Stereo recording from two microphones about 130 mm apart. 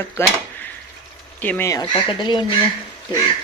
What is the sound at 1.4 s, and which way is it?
Speech, 10° left (ahead or behind).